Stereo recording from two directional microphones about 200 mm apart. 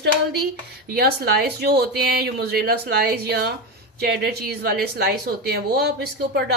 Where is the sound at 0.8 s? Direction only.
50° right (ahead or behind).